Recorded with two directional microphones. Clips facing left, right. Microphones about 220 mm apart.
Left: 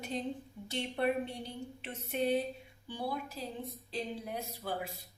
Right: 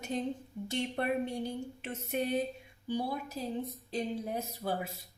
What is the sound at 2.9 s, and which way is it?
A woman's voice, 45° right (ahead or behind).